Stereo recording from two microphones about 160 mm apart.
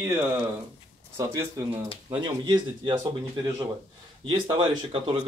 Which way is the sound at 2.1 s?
30° right (ahead or behind).